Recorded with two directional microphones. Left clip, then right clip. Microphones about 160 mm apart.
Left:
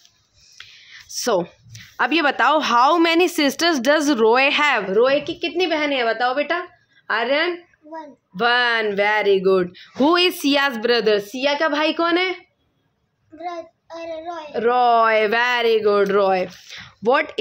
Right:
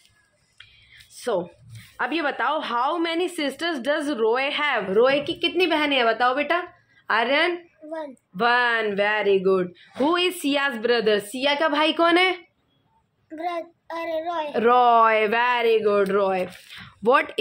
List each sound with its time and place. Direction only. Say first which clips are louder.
0.6 s speech: left 7 dB; 35° left (ahead or behind)
4.9 s a woman's voice: left 2 dB; 15° left (ahead or behind); by 11.1 s 30° left (ahead or behind)
11.1 s a woman's voice: left 2 dB; 15° left (ahead or behind); by 12.4 s centre (ahead or behind)
13.4 s a child's voice: right 1 dB; 60° right (ahead or behind)
14.5 s speech: left 1 dB; 5° right (ahead or behind)
14.9 s speech: left 2 dB; 10° left (ahead or behind); by 16.4 s 30° left (ahead or behind)
16.7 s speech: left 1 dB; 10° left (ahead or behind)